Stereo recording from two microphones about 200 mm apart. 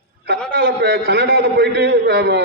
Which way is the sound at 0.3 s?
55° right (ahead or behind).